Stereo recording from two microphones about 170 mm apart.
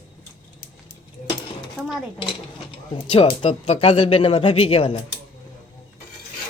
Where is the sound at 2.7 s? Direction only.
30° left (ahead or behind).